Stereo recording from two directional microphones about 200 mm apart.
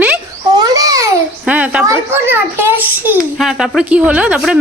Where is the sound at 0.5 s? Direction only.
15° right (ahead or behind).